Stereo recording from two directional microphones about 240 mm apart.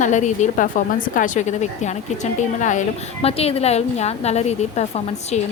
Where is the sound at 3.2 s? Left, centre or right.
Left.